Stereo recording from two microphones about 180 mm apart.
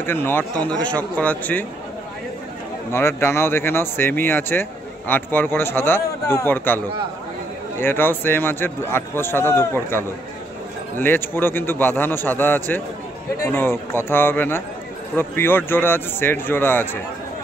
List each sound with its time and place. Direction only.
0.0 s speech: 10° left (ahead or behind)
2.9 s speech: 15° left (ahead or behind)
7.8 s speech: 10° left (ahead or behind)